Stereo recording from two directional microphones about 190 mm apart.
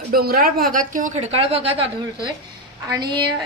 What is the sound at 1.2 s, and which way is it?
Speech, 30° right (ahead or behind).